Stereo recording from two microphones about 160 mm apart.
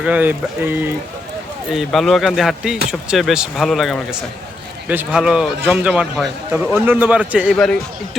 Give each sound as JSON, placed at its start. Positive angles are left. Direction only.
{"t": 0.0, "sound": "speech", "side_deg": -10}
{"t": 1.7, "sound": "speech", "side_deg": 0}